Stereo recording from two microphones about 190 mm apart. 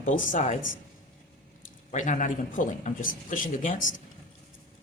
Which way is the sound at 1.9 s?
40° left (ahead or behind).